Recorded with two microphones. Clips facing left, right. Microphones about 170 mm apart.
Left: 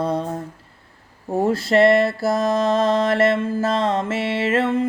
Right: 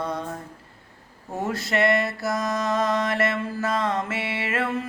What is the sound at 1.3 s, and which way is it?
Mantra, 30° left (ahead or behind).